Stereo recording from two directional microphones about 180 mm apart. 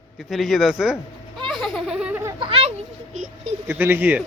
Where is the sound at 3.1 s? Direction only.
40° right (ahead or behind).